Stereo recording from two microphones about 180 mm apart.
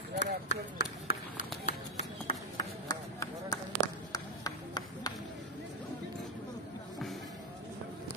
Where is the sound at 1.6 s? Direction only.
40° left (ahead or behind).